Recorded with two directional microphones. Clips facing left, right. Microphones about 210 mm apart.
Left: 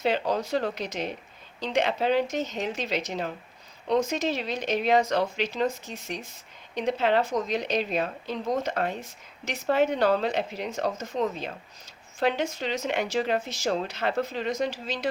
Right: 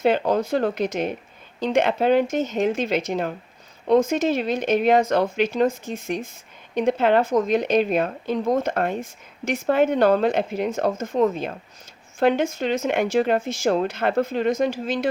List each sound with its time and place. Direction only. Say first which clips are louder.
0.0 s speech: right 6 dB; 50° right (ahead or behind)